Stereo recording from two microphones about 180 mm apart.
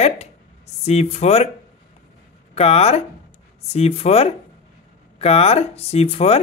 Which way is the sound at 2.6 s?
35° left (ahead or behind).